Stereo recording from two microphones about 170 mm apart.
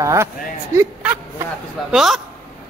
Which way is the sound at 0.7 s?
10° right (ahead or behind).